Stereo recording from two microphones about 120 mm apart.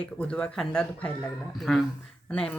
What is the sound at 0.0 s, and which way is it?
Speech, 10° left (ahead or behind).